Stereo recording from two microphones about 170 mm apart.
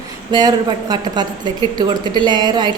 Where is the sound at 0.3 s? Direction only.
25° right (ahead or behind).